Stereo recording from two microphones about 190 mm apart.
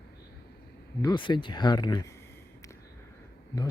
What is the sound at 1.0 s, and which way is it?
Speech, 25° left (ahead or behind).